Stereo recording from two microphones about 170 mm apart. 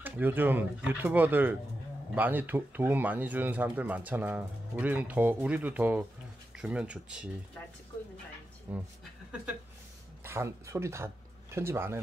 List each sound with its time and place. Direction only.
0.0 s speech: 10° right (ahead or behind)
8.7 s speech: 10° right (ahead or behind)
10.2 s speech: 15° right (ahead or behind)